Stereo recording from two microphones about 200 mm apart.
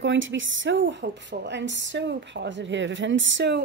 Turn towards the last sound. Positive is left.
turn(degrees=-60)  # may be behind; listen again after turning